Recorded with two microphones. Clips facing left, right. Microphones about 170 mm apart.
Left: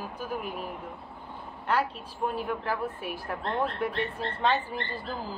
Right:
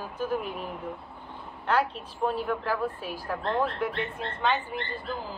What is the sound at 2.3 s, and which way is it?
Speech, 20° left (ahead or behind).